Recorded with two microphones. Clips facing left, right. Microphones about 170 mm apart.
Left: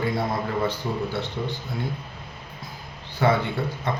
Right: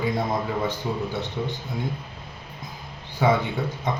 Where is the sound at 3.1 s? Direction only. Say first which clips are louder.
Even; 15° right (ahead or behind).